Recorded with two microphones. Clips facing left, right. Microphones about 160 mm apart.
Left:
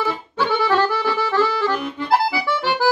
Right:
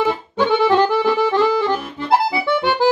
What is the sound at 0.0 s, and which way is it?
Accordion, 20° right (ahead or behind).